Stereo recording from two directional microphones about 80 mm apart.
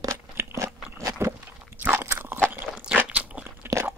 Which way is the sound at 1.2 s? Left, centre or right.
Right.